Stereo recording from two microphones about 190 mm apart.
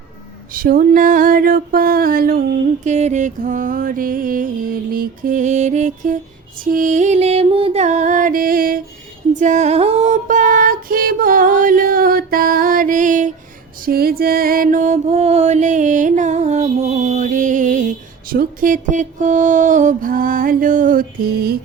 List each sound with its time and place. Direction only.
0.5 s music: 50° right (ahead or behind)
2.8 s music: 40° right (ahead or behind)
13.8 s music: 50° right (ahead or behind)